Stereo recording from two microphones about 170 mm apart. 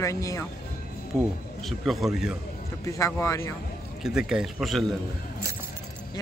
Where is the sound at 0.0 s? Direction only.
20° left (ahead or behind).